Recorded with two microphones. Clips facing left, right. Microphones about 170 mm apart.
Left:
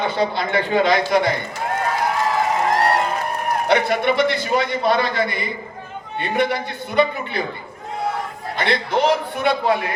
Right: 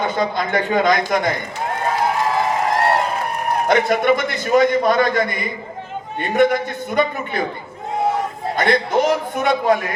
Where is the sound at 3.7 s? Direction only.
45° right (ahead or behind).